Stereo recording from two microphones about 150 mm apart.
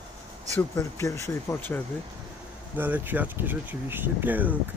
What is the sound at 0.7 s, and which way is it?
Speech, 20° left (ahead or behind).